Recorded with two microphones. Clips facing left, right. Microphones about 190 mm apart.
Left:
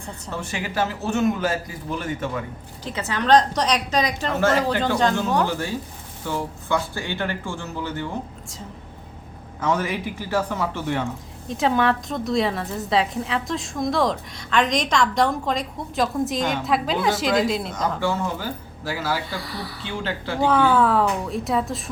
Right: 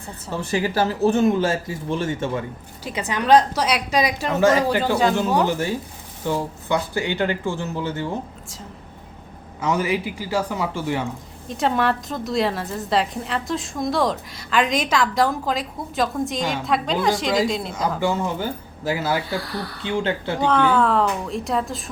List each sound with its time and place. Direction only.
0.3 s speech: 35° right (ahead or behind)
2.8 s a woman's voice: 15° right (ahead or behind)
9.6 s a woman's voice: 10° right (ahead or behind)
19.3 s a woman's voice: centre (ahead or behind)